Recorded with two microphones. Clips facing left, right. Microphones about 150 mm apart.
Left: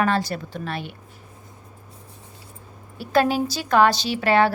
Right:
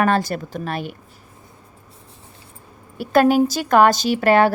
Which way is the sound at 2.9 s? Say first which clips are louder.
Right 5 dB; 50° right (ahead or behind).